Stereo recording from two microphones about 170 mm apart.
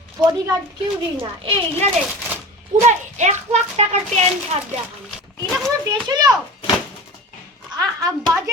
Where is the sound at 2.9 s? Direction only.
45° right (ahead or behind).